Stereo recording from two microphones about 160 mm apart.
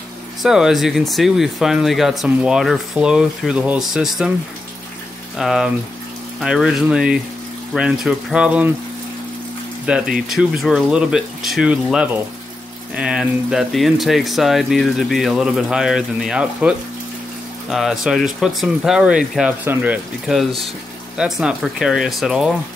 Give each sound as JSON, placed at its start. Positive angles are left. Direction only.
{"t": 0.4, "sound": "speech", "side_deg": 0}
{"t": 5.4, "sound": "speech", "side_deg": 0}
{"t": 9.8, "sound": "speech", "side_deg": -5}